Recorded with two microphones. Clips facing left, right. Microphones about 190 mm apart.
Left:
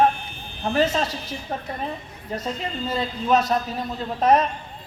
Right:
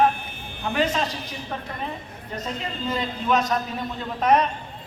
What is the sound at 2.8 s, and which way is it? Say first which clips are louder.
A man's voice: left 1 dB; 35° left (ahead or behind).